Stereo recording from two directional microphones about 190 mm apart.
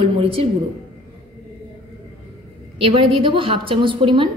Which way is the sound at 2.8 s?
25° right (ahead or behind).